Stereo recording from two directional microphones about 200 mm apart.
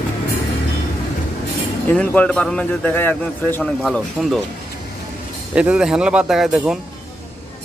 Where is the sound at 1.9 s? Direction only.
5° left (ahead or behind).